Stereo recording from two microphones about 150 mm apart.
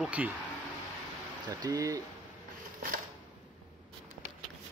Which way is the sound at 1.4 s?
25° right (ahead or behind).